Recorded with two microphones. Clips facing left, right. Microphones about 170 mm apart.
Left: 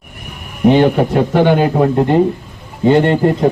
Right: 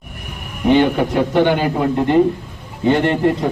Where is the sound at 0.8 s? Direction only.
45° left (ahead or behind).